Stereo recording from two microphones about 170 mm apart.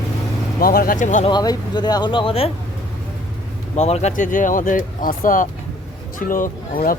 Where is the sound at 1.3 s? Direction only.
25° left (ahead or behind).